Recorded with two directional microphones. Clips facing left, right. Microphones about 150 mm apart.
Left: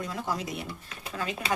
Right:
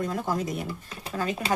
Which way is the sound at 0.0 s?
50° right (ahead or behind).